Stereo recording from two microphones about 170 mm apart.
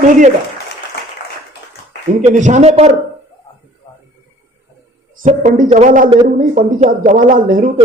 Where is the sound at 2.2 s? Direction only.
45° right (ahead or behind).